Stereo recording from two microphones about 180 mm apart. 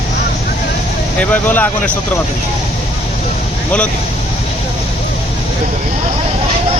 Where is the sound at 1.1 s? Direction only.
10° left (ahead or behind).